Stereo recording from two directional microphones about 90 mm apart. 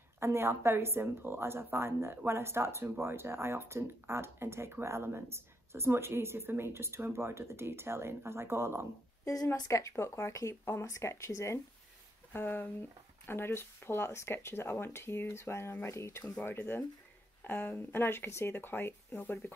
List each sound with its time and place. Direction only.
0.2 s a woman's voice: 30° right (ahead or behind)
9.2 s speech: 40° left (ahead or behind)
12.3 s speech: 20° left (ahead or behind)